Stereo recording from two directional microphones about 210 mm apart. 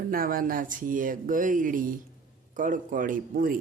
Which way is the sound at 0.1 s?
45° right (ahead or behind).